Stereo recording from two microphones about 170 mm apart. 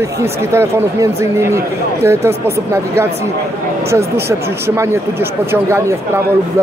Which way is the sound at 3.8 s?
15° right (ahead or behind).